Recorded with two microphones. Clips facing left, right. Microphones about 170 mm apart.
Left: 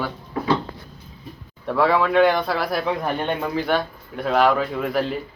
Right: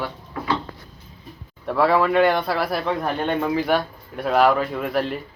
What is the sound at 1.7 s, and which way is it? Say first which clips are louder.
A man's voice: even; centre (ahead or behind).